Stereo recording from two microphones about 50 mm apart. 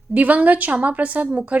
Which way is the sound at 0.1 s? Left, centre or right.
Right.